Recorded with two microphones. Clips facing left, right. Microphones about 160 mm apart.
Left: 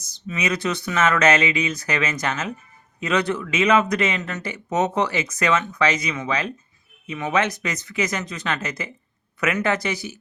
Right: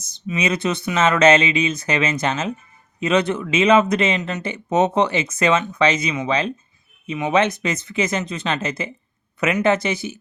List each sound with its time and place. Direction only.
0.0 s speech: 25° right (ahead or behind)